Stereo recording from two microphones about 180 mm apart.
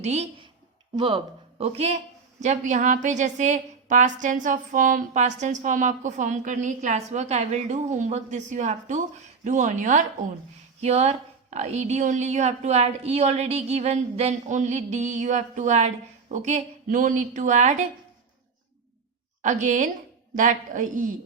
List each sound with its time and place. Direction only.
0.0 s a woman's voice: 40° right (ahead or behind)
19.4 s a woman's voice: 45° right (ahead or behind)